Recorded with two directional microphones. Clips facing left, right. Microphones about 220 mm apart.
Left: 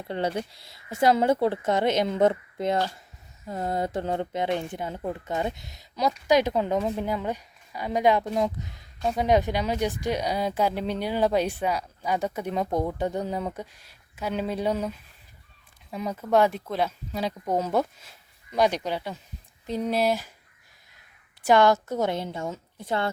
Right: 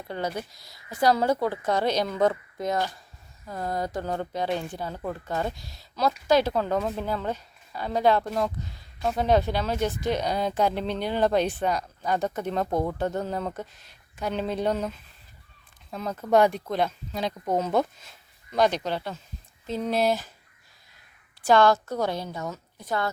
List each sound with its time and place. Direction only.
0.1 s speech: 30° left (ahead or behind); by 20.3 s 10° left (ahead or behind)
21.4 s speech: 20° left (ahead or behind)